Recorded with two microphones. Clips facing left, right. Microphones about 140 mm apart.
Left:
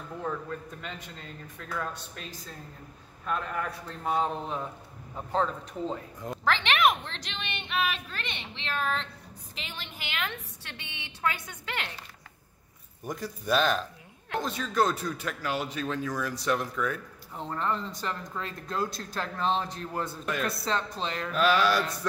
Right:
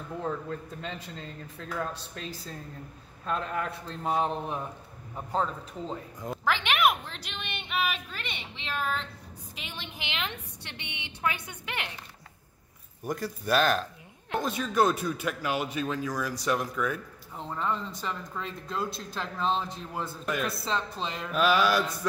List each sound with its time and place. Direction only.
0.7 s a man's voice: 30° right (ahead or behind)
3.3 s a man's voice: 25° right (ahead or behind)
5.1 s a sound: 5° right (ahead or behind)
11.2 s a woman's voice: 15° right (ahead or behind)
13.0 s speech: 5° right (ahead or behind)